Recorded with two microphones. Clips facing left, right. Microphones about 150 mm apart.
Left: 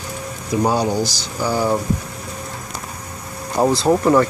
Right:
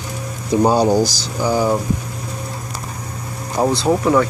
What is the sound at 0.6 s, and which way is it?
Speech, 30° right (ahead or behind).